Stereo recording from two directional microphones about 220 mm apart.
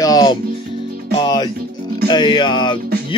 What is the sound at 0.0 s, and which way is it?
Music, 15° left (ahead or behind).